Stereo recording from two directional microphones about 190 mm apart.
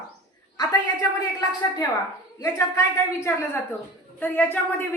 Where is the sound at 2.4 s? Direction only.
15° left (ahead or behind).